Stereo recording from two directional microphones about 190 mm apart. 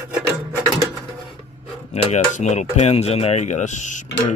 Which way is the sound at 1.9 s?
35° left (ahead or behind).